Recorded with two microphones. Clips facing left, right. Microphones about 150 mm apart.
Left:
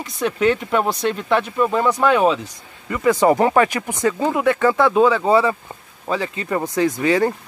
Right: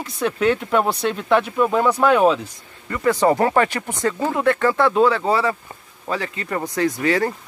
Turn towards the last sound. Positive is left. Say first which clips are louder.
# left 2 dB
turn(degrees=20)  # may be behind; listen again after turning